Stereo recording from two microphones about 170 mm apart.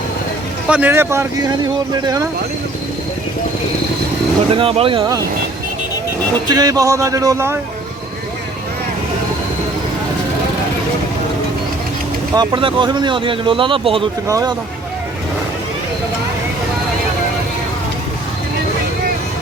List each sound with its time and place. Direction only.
0.7 s speech: 10° right (ahead or behind)
4.5 s speech: 30° right (ahead or behind)
6.5 s speech: 20° right (ahead or behind)
12.3 s speech: 25° right (ahead or behind)
14.3 s speech: 20° right (ahead or behind)